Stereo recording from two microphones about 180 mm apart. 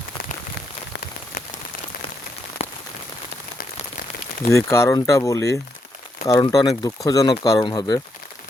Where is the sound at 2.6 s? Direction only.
35° left (ahead or behind).